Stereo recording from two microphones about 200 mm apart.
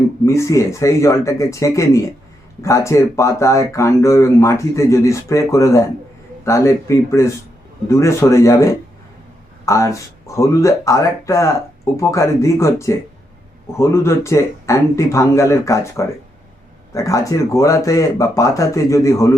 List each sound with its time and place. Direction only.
0.3 s speech: 15° left (ahead or behind)